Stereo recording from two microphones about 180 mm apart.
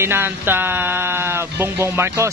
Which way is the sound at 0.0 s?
10° right (ahead or behind).